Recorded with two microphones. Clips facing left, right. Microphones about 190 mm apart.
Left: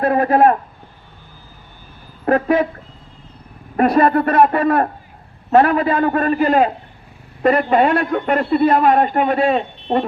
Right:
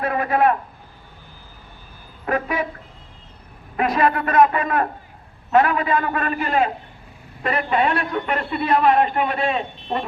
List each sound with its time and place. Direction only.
0.0 s a man's voice: 40° left (ahead or behind)
2.2 s speech: 35° left (ahead or behind)
3.8 s a man's voice: 35° left (ahead or behind)